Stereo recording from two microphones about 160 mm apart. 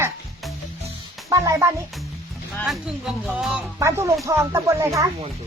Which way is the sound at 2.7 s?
5° right (ahead or behind).